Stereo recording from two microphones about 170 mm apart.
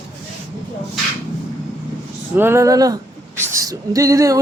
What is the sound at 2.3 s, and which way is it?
Speech, 15° right (ahead or behind).